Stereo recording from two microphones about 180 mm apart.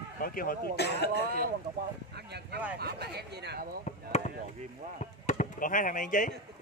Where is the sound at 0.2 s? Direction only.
55° left (ahead or behind).